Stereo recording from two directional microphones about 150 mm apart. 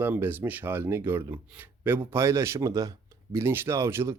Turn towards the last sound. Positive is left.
turn(degrees=-15)  # may be behind; listen again after turning